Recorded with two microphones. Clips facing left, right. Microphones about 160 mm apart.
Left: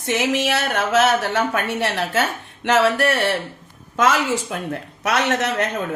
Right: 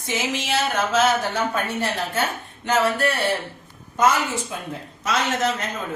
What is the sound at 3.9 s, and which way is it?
Speech, 90° left.